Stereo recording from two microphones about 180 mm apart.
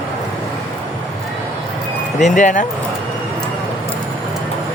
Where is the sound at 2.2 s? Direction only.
45° left (ahead or behind).